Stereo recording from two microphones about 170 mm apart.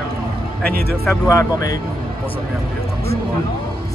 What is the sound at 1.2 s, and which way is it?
Speech, 20° left (ahead or behind).